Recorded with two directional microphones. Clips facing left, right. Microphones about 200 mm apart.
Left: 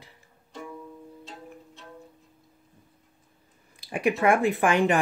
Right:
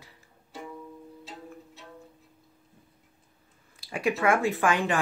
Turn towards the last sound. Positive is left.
turn(degrees=20)  # may be behind; listen again after turning